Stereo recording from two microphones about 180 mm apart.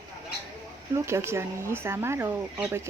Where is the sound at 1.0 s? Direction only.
15° right (ahead or behind).